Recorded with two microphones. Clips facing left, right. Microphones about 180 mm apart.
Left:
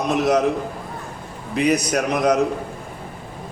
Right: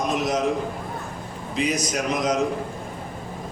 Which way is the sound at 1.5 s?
60° left (ahead or behind).